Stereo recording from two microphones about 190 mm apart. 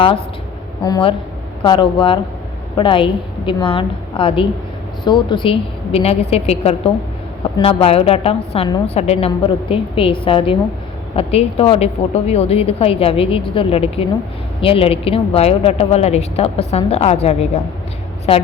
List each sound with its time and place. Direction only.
0.9 s a woman's voice: 20° left (ahead or behind)